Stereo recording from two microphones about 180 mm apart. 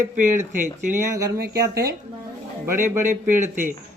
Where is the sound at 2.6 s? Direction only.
15° right (ahead or behind).